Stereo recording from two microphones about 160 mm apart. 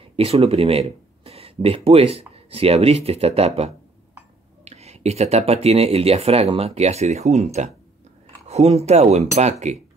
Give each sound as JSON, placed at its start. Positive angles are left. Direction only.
{"t": 0.1, "sound": "speech", "side_deg": -40}